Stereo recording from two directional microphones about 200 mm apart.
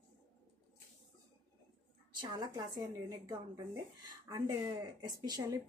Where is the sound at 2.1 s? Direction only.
20° right (ahead or behind).